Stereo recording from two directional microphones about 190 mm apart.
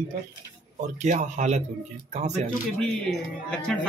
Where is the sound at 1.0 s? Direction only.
40° right (ahead or behind).